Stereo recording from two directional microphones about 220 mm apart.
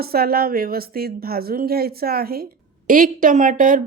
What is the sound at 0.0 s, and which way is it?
Speech, 45° right (ahead or behind).